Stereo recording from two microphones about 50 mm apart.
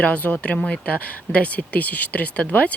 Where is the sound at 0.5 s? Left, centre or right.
Centre.